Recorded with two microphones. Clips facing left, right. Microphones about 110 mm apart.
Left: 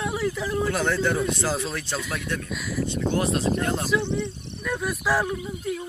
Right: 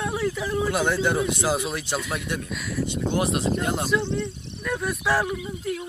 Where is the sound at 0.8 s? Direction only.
25° right (ahead or behind).